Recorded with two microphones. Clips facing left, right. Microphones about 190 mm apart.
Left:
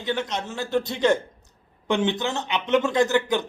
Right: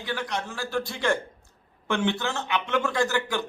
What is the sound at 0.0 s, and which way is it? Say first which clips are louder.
A man's voice: left 4 dB; 20° left (ahead or behind).